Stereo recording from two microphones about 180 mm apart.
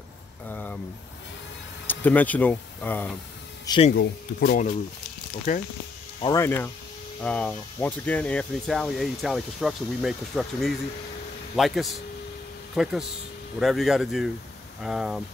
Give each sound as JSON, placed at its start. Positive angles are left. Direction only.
{"t": 0.5, "sound": "vehicle", "side_deg": 10}
{"t": 1.9, "sound": "speech", "side_deg": 10}
{"t": 3.9, "sound": "speech", "side_deg": 60}
{"t": 6.2, "sound": "speech", "side_deg": 15}